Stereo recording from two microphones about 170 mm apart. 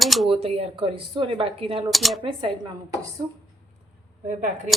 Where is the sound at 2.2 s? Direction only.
30° right (ahead or behind).